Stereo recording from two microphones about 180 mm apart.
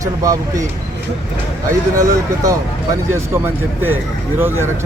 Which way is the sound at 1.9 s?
20° right (ahead or behind).